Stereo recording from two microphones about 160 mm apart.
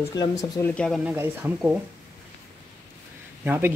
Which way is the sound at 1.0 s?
15° right (ahead or behind).